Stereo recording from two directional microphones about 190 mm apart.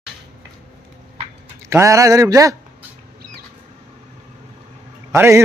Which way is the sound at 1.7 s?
15° right (ahead or behind).